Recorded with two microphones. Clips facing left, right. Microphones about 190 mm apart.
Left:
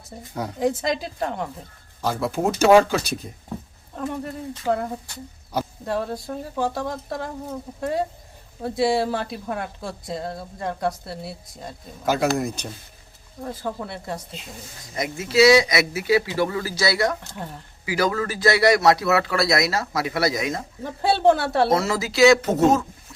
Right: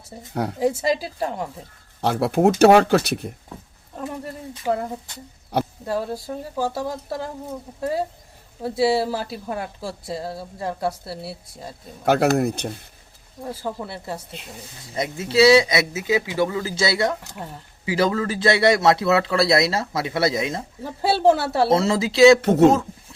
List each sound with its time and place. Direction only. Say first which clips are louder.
0.1 s a woman's voice: right 4 dB; 5° right (ahead or behind)
2.0 s speech: right 5 dB; 65° right (ahead or behind)
3.9 s a woman's voice: left 2 dB; 5° right (ahead or behind)
12.0 s speech: right 4 dB; 60° right (ahead or behind)
13.4 s a woman's voice: even; 10° right (ahead or behind)
14.9 s a man's voice: even; 30° right (ahead or behind)
20.8 s a woman's voice: even; 5° right (ahead or behind)
21.7 s a man's voice: right 3 dB; 25° right (ahead or behind)
22.4 s speech: right 4 dB; 65° right (ahead or behind)